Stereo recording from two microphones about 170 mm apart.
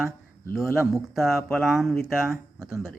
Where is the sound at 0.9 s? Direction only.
Centre (ahead or behind).